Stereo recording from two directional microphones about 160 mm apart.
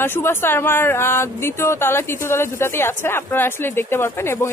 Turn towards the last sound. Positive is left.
turn(degrees=15)  # may be behind; listen again after turning